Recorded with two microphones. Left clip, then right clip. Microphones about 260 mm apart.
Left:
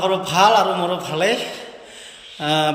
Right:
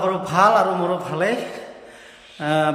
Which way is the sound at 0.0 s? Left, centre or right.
Centre.